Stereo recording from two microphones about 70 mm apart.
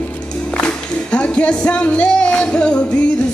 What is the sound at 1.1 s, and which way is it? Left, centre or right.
Music, centre.